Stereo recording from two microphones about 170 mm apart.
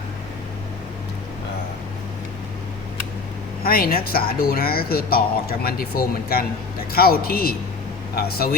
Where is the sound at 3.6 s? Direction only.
60° left (ahead or behind).